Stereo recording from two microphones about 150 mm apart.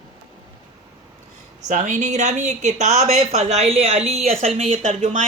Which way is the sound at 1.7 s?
55° right (ahead or behind).